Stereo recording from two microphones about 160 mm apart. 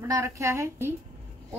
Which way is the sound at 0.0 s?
20° right (ahead or behind).